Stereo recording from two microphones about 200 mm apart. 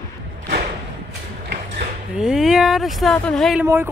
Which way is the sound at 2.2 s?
Centre (ahead or behind).